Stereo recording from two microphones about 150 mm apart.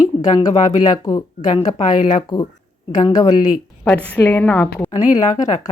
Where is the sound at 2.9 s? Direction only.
25° left (ahead or behind).